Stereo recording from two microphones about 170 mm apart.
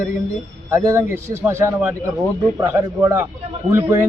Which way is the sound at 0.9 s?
15° right (ahead or behind).